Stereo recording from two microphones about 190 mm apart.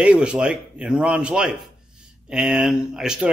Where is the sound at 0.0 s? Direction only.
5° right (ahead or behind).